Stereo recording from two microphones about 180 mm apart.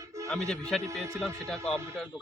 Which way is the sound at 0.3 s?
5° left (ahead or behind).